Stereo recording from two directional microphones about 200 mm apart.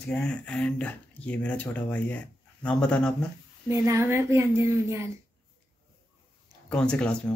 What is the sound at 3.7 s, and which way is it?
Speech, 15° right (ahead or behind).